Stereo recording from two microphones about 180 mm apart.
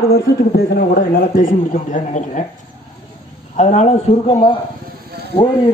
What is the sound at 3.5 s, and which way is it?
A man's voice, 40° left (ahead or behind).